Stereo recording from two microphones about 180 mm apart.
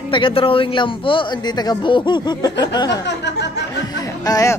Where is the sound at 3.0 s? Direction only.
75° left (ahead or behind).